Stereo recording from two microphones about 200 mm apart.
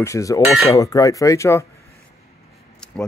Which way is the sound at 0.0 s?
15° left (ahead or behind).